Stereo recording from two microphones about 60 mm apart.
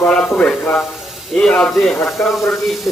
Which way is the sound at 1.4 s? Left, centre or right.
Centre.